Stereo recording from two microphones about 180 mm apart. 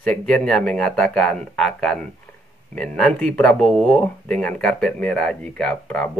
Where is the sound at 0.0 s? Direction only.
5° left (ahead or behind).